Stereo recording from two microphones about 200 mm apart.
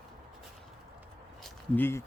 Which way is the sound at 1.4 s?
10° left (ahead or behind).